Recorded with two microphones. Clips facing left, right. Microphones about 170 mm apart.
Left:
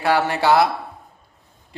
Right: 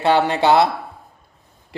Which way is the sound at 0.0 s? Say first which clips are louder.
Right 3 dB; 25° right (ahead or behind).